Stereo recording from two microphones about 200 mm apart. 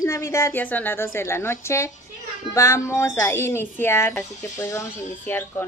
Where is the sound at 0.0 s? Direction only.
15° left (ahead or behind).